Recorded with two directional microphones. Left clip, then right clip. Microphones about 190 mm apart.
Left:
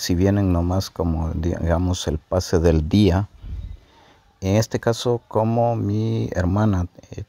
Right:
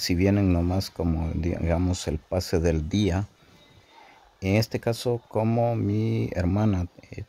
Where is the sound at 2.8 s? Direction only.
30° left (ahead or behind).